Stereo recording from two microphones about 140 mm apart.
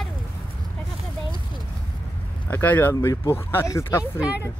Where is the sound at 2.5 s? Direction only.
15° left (ahead or behind).